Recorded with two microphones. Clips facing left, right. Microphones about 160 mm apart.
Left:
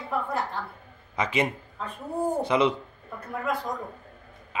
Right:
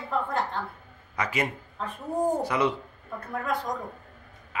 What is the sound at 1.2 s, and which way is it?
Speech, 20° left (ahead or behind).